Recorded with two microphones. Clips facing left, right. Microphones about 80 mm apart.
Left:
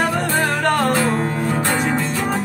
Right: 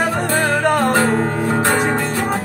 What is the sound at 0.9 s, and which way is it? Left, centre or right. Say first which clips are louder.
Music: right 3 dB; right.